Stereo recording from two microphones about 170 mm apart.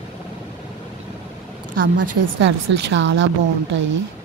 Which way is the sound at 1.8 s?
90° right.